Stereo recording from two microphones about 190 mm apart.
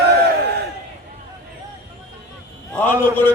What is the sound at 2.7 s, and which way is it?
Speech, 10° left (ahead or behind).